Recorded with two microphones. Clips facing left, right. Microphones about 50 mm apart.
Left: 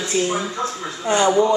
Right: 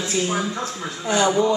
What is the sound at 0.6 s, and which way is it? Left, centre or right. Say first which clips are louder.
Speech: left 3 dB; left.